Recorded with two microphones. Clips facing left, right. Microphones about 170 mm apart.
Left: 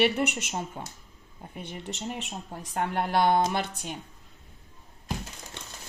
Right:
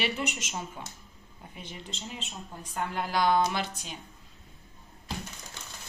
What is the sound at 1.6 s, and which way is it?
Speech, 60° left (ahead or behind).